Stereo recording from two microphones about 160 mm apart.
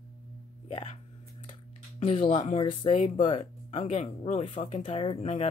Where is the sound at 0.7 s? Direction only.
40° left (ahead or behind).